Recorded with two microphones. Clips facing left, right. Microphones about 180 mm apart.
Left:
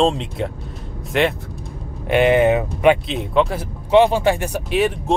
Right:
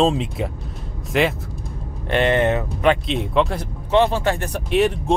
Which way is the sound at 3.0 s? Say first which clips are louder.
Left 1 dB; centre (ahead or behind).